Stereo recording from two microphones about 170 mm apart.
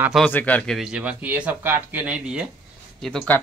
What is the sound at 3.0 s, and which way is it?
Speech, 10° left (ahead or behind).